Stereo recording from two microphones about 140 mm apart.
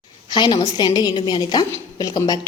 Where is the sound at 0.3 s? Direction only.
35° left (ahead or behind).